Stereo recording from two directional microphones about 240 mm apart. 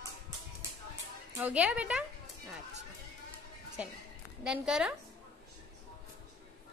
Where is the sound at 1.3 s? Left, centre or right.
Centre.